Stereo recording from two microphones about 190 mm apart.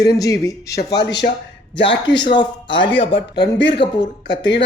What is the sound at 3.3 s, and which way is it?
Speech, 65° left (ahead or behind).